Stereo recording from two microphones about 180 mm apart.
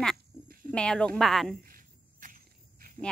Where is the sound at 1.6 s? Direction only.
50° right (ahead or behind).